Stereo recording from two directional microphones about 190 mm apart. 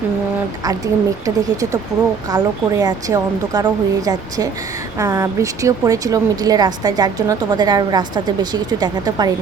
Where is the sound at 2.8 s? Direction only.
20° right (ahead or behind).